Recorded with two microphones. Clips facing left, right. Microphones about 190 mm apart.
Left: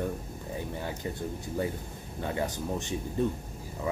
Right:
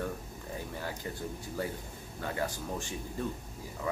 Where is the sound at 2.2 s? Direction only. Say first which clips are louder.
Left 3 dB; 20° left (ahead or behind).